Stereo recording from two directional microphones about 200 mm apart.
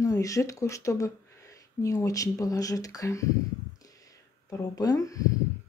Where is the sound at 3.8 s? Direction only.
15° left (ahead or behind).